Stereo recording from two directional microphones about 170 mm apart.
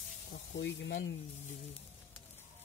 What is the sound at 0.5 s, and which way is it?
Speech, 90° left.